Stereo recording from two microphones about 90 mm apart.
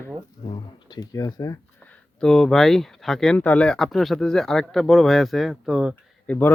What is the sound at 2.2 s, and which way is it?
Speech, 5° left (ahead or behind).